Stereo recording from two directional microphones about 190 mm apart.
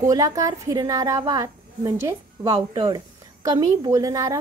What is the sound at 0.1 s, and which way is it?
A woman's voice, 20° right (ahead or behind).